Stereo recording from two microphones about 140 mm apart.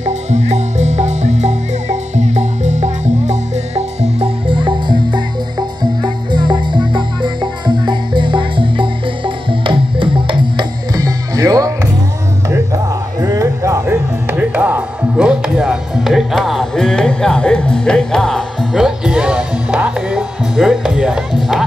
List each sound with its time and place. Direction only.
0.0 s music: 55° right (ahead or behind); by 11.9 s 25° right (ahead or behind)
13.2 s music: 25° right (ahead or behind); by 21.6 s centre (ahead or behind)